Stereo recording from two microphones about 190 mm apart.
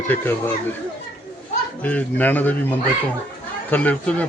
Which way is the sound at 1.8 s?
10° left (ahead or behind).